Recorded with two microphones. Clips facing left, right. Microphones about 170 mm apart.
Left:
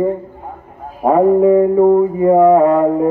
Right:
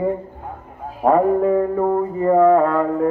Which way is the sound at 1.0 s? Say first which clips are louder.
Left 5 dB; 10° left (ahead or behind).